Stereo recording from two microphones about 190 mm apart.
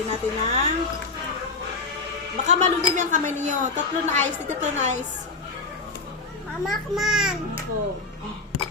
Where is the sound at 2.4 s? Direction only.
40° right (ahead or behind).